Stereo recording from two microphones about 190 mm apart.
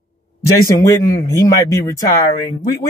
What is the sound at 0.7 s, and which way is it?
Speech, 15° left (ahead or behind).